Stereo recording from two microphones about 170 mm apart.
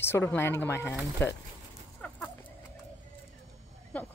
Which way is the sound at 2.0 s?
10° left (ahead or behind).